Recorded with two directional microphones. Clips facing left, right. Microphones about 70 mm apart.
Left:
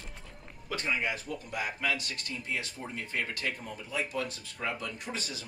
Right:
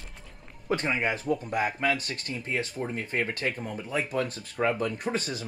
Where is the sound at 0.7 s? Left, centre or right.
Right.